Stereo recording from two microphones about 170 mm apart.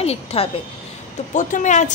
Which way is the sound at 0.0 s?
35° left (ahead or behind).